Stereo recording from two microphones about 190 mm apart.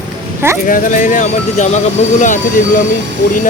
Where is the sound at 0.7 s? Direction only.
45° left (ahead or behind).